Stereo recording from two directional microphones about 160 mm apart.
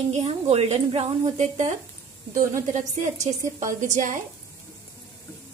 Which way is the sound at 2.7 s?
50° right (ahead or behind).